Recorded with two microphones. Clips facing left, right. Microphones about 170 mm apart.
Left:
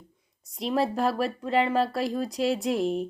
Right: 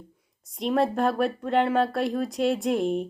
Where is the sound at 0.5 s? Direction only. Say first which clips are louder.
Right 2 dB; centre (ahead or behind).